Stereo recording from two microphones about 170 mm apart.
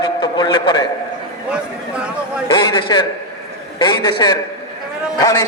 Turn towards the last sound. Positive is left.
turn(degrees=20)  # may be behind; listen again after turning